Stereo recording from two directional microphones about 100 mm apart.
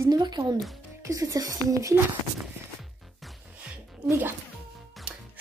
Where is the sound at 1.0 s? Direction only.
35° right (ahead or behind).